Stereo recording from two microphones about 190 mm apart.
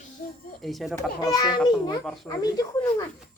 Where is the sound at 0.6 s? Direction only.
Centre (ahead or behind).